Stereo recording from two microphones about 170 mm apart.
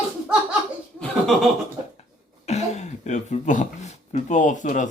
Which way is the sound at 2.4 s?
40° left (ahead or behind).